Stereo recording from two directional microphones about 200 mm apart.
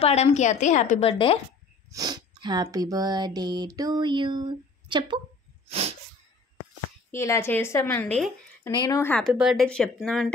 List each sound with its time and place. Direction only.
0.0 s a woman's voice: 35° left (ahead or behind)
1.9 s speech: 20° right (ahead or behind)
5.7 s sneeze: 30° right (ahead or behind)
7.1 s a woman's voice: 15° left (ahead or behind)
9.2 s speech: 5° right (ahead or behind)